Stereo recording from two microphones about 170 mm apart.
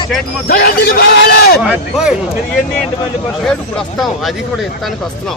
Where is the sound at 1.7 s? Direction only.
5° right (ahead or behind).